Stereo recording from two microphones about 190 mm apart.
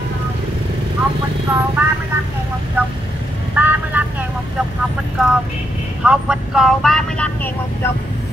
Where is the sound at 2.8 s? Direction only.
10° right (ahead or behind).